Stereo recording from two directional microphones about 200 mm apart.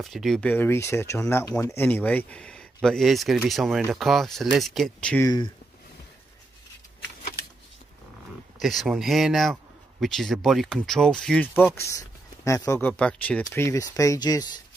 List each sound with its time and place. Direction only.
0.0 s speech: centre (ahead or behind)
8.5 s speech: centre (ahead or behind); by 14.5 s 20° left (ahead or behind)